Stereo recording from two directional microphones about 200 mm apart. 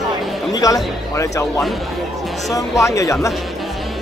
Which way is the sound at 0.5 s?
15° left (ahead or behind).